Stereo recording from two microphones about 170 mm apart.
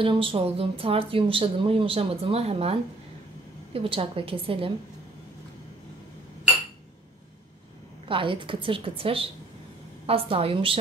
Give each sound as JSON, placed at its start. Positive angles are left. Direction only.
{"t": 0.0, "sound": "speech", "side_deg": -30}
{"t": 8.1, "sound": "speech", "side_deg": -30}